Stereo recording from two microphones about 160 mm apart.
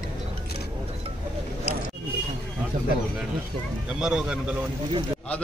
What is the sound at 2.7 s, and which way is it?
Speech, 55° right (ahead or behind).